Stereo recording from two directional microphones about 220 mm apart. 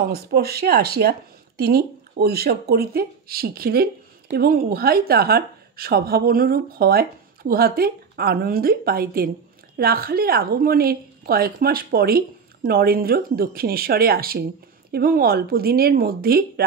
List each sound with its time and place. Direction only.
0.1 s speech: 45° right (ahead or behind)